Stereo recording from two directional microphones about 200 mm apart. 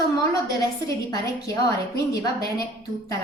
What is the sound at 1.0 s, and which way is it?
Speech, 15° left (ahead or behind).